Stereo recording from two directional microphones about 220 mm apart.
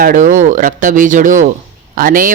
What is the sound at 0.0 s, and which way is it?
A man's voice, 35° right (ahead or behind).